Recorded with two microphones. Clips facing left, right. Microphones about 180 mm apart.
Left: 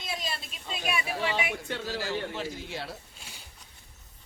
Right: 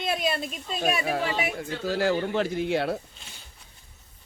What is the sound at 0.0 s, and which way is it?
A woman's voice, 60° right (ahead or behind).